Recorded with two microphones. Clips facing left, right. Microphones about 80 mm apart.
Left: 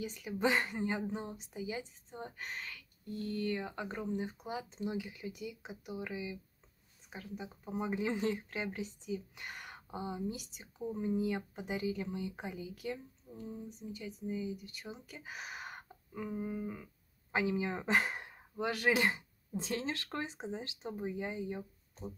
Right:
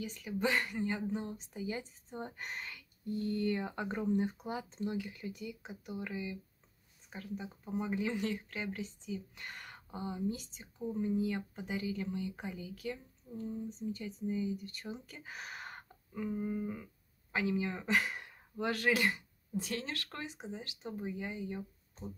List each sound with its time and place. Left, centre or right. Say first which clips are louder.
0.0 s speech: left 1 dB; centre
2.1 s speech: right 1 dB; centre
17.3 s speech: left 1 dB; left
18.6 s speech: even; centre
18.9 s speech: left 1 dB; left